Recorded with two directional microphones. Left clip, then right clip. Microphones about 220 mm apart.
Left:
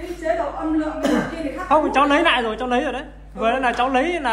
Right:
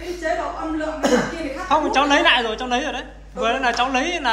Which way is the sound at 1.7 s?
Centre (ahead or behind).